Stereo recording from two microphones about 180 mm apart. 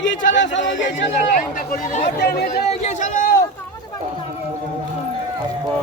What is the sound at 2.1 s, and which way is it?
Speech, 65° left (ahead or behind).